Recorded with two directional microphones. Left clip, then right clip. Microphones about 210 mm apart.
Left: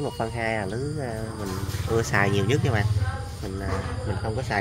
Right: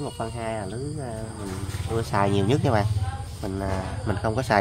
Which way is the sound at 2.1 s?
15° right (ahead or behind).